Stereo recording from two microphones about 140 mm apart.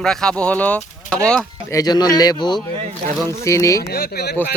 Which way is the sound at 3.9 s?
90° left.